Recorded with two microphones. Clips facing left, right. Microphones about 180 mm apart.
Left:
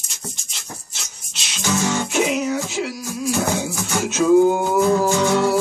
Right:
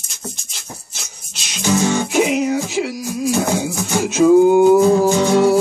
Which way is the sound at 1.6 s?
15° right (ahead or behind).